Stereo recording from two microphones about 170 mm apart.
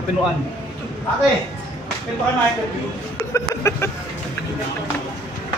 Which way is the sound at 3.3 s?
15° left (ahead or behind).